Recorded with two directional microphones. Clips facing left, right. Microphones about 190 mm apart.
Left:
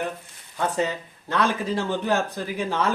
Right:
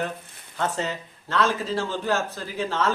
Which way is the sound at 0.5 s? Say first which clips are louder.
Left 2 dB; 15° left (ahead or behind).